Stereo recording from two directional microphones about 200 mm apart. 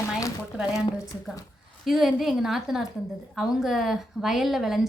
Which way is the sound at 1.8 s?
Centre (ahead or behind).